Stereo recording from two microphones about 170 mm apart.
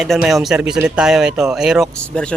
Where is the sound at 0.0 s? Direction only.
Centre (ahead or behind).